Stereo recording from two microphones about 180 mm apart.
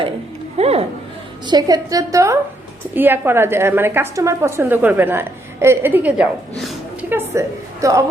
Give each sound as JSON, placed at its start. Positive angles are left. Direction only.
{"t": 0.5, "sound": "speech", "side_deg": -35}
{"t": 1.5, "sound": "a woman's voice", "side_deg": -20}